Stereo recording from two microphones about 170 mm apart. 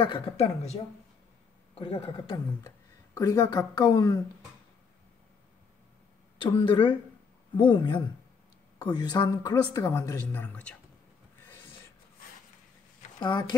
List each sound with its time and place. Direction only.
0.0 s speech: 35° left (ahead or behind)
1.8 s a woman's voice: 30° left (ahead or behind)
6.4 s a woman's voice: 30° left (ahead or behind); by 10.8 s 5° left (ahead or behind)
13.2 s a woman's voice: 25° left (ahead or behind)